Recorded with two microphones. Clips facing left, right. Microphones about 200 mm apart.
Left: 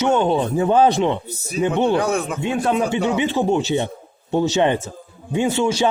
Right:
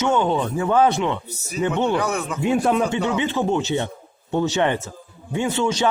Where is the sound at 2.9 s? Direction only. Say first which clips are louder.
Left 2 dB; 15° left (ahead or behind).